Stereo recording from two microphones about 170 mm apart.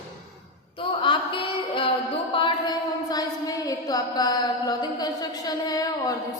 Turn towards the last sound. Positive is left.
turn(degrees=20)  # may be behind; listen again after turning